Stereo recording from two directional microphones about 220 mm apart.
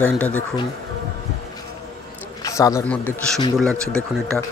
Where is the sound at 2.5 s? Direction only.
15° left (ahead or behind).